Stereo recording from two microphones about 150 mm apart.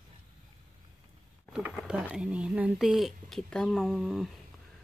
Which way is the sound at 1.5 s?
5° right (ahead or behind).